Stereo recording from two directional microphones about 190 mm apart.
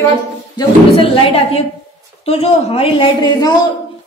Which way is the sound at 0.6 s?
30° left (ahead or behind).